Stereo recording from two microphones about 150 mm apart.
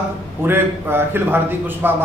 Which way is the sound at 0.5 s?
15° right (ahead or behind).